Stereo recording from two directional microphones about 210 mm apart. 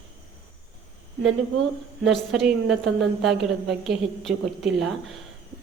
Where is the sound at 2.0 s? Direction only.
Centre (ahead or behind).